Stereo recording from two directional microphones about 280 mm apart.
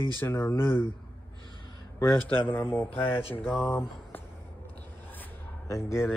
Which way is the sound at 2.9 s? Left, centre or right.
Centre.